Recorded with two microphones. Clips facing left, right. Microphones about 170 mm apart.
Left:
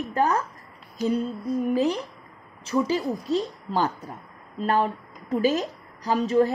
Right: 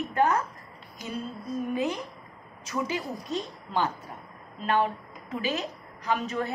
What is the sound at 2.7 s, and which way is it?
A woman's voice, 35° left (ahead or behind).